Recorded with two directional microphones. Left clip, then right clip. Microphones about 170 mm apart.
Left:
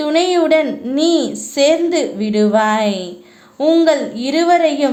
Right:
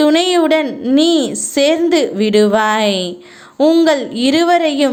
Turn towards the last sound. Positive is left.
turn(degrees=-30)  # may be behind; listen again after turning